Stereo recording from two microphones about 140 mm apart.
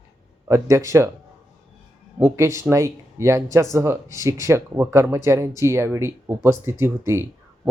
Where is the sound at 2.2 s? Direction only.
15° right (ahead or behind).